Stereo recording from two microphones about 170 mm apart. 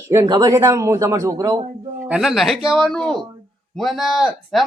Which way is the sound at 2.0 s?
5° right (ahead or behind).